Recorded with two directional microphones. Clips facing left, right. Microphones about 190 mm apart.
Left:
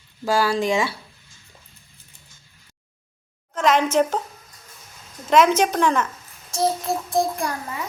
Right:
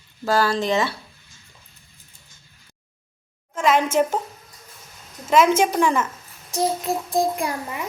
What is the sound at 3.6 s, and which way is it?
Speech, 10° right (ahead or behind).